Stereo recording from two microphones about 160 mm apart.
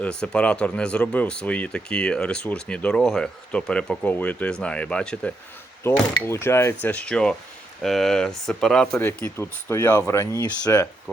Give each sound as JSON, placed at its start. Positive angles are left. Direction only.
{"t": 0.0, "sound": "speech", "side_deg": 5}